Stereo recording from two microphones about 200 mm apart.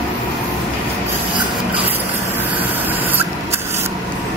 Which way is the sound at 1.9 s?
10° right (ahead or behind).